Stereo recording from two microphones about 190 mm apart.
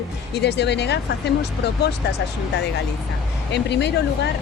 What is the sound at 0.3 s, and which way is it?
Speech, 65° left (ahead or behind).